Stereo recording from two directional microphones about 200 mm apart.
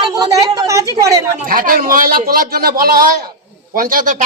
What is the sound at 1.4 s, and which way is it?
A man's voice, 45° right (ahead or behind).